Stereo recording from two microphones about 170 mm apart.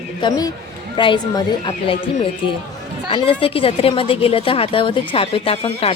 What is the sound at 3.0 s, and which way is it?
A woman's voice, 30° left (ahead or behind).